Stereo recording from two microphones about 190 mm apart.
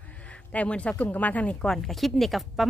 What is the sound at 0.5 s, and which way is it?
A woman's voice, 5° left (ahead or behind).